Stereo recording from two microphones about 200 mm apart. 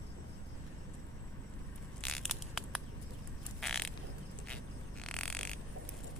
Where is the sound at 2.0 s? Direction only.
Centre (ahead or behind).